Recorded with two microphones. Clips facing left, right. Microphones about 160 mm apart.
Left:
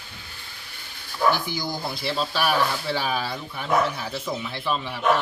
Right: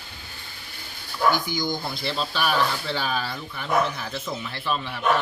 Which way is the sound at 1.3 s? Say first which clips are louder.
Right 1 dB; 30° left (ahead or behind).